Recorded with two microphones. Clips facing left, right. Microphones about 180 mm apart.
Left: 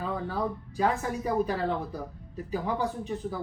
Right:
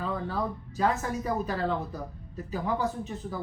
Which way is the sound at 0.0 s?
10° left (ahead or behind).